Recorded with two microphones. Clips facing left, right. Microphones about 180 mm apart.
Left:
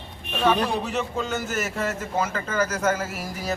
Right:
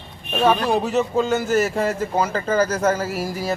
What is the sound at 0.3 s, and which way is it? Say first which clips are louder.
A man's voice: right 4 dB; 40° right (ahead or behind).